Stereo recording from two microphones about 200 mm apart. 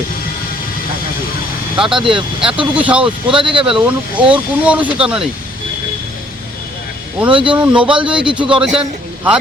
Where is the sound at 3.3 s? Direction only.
25° right (ahead or behind).